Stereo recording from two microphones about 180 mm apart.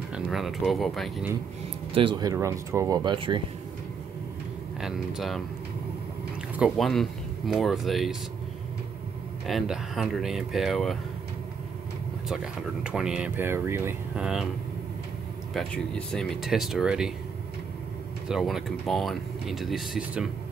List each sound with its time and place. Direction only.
0.1 s speech: centre (ahead or behind)
2.0 s speech: 25° right (ahead or behind)
4.8 s speech: centre (ahead or behind)
6.5 s speech: 5° right (ahead or behind)
9.5 s speech: centre (ahead or behind)
12.3 s speech: 5° right (ahead or behind)
15.5 s speech: 5° left (ahead or behind)
18.3 s speech: centre (ahead or behind)